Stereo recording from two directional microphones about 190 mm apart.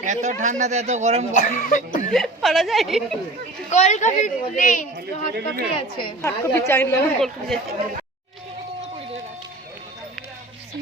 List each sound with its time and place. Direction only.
0.0 s speech: 40° right (ahead or behind)
1.3 s speech: 40° left (ahead or behind)
2.1 s a woman's voice: centre (ahead or behind)
3.7 s speech: 40° left (ahead or behind)
4.9 s speech: 60° right (ahead or behind)
5.7 s a woman's voice: 25° left (ahead or behind)
6.2 s speech: 10° left (ahead or behind)